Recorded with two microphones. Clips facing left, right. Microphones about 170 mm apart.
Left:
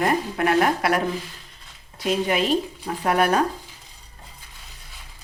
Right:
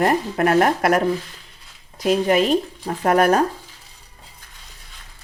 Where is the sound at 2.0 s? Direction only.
45° right (ahead or behind).